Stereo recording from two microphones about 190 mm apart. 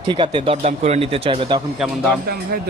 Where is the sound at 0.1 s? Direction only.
25° right (ahead or behind).